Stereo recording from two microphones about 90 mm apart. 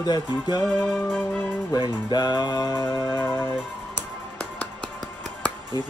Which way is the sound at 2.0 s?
50° left (ahead or behind).